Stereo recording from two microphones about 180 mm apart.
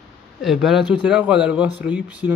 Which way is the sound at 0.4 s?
Centre (ahead or behind).